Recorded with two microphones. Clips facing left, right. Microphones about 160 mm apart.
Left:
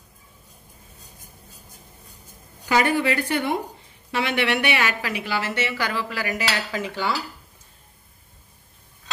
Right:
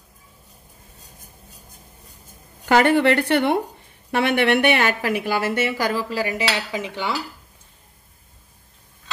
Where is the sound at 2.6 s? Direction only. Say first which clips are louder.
Right 5 dB; 60° right (ahead or behind).